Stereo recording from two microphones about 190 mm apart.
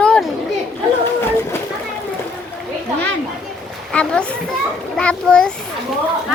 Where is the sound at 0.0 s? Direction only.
5° left (ahead or behind).